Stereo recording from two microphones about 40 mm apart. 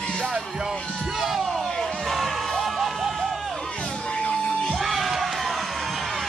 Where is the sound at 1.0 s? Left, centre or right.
Centre.